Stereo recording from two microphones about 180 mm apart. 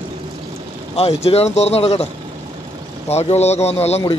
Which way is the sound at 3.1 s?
35° left (ahead or behind).